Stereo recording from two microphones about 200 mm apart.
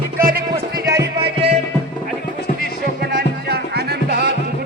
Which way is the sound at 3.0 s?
50° right (ahead or behind).